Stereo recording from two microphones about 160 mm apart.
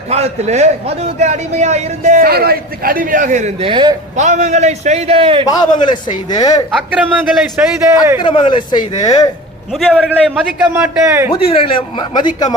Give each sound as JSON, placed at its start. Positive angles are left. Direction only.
{"t": 0.1, "sound": "a man's voice", "side_deg": -45}
{"t": 2.2, "sound": "a man's voice", "side_deg": -70}
{"t": 3.7, "sound": "a man's voice", "side_deg": -30}
{"t": 4.2, "sound": "a man's voice", "side_deg": -45}
{"t": 5.5, "sound": "speech", "side_deg": 25}
{"t": 6.7, "sound": "a man's voice", "side_deg": -5}
{"t": 8.2, "sound": "speech", "side_deg": 30}
{"t": 9.7, "sound": "a man's voice", "side_deg": 0}
{"t": 11.3, "sound": "speech", "side_deg": 35}